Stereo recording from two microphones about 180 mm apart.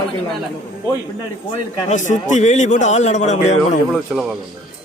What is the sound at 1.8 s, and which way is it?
A man's voice, 40° left (ahead or behind).